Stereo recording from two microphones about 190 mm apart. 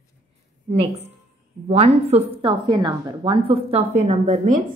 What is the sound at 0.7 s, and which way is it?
A woman's voice, 30° right (ahead or behind).